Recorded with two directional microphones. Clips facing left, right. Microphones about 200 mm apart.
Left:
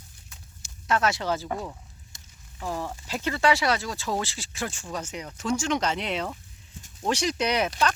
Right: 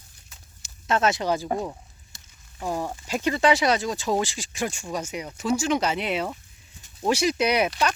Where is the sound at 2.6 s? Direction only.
15° right (ahead or behind).